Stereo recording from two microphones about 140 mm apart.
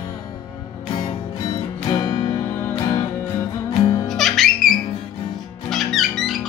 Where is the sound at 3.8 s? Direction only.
30° left (ahead or behind).